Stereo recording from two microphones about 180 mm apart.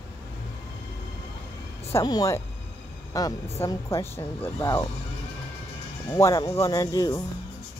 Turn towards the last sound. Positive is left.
turn(degrees=20)  # may be behind; listen again after turning